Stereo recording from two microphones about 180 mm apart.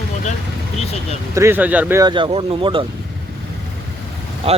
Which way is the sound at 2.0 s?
25° right (ahead or behind).